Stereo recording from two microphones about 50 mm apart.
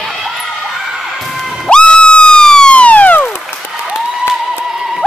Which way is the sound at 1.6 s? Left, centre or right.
Centre.